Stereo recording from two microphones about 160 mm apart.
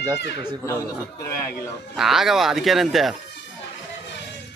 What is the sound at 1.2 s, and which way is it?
Speech, 20° left (ahead or behind).